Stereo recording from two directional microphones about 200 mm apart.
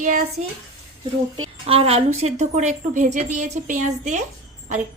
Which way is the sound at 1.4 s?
30° right (ahead or behind).